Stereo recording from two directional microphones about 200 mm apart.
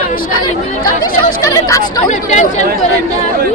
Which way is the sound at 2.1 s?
35° left (ahead or behind).